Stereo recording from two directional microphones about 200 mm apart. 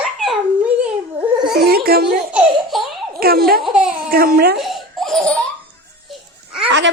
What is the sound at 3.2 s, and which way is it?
Speech, 50° right (ahead or behind).